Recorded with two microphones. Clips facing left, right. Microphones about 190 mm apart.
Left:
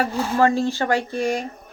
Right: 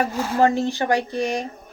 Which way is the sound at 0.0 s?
20° right (ahead or behind).